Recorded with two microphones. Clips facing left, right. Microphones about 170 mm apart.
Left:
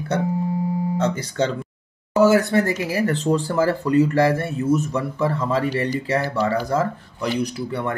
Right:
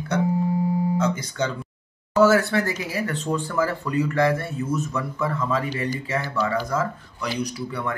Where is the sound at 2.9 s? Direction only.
30° left (ahead or behind).